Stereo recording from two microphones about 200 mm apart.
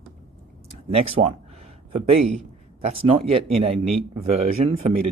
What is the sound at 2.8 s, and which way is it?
Speech, 25° right (ahead or behind).